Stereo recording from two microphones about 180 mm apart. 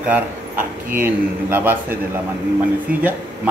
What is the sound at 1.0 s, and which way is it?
Speech, 10° right (ahead or behind).